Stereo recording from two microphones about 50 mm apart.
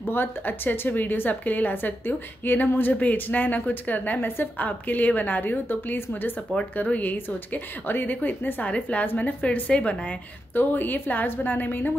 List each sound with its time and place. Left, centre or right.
0.1 s a woman's voice: left
9.4 s a woman's voice: left
10.5 s a woman's voice: left